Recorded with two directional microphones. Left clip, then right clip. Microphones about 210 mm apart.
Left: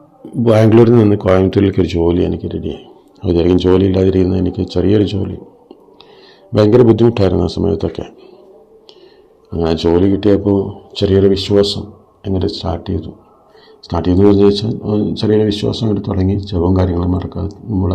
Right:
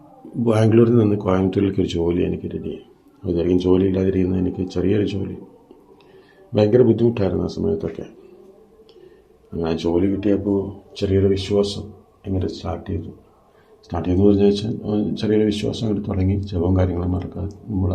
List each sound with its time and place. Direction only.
0.4 s a man's voice: 35° left (ahead or behind)
6.5 s speech: 25° left (ahead or behind)
9.5 s a man's voice: 30° left (ahead or behind)